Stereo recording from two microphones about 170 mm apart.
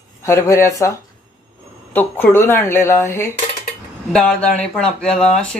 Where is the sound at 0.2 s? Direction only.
15° left (ahead or behind).